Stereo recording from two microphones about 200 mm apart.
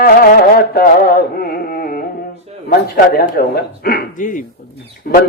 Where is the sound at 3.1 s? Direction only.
50° left (ahead or behind).